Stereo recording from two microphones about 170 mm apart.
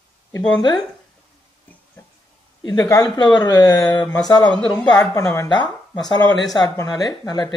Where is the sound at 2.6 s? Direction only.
25° left (ahead or behind).